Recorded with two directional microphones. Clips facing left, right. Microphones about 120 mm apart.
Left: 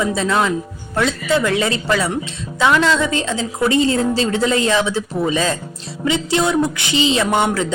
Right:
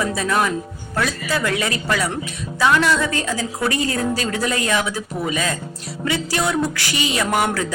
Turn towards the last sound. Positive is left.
turn(degrees=25)  # may be behind; listen again after turning